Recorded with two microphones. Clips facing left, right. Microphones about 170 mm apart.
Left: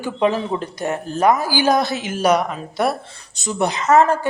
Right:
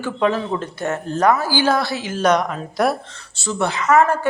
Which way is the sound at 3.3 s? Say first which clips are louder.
Left 1 dB; 15° left (ahead or behind).